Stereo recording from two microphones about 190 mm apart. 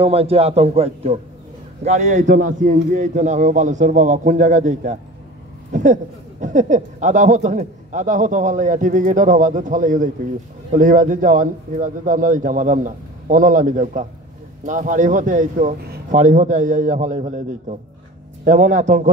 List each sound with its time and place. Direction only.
0.0 s a man's voice: 30° right (ahead or behind)
5.7 s a sound: 40° right (ahead or behind)
6.4 s a man's voice: 40° right (ahead or behind)